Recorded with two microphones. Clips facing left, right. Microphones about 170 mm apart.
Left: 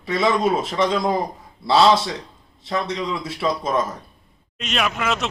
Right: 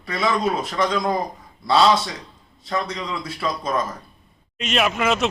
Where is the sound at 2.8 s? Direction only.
25° left (ahead or behind).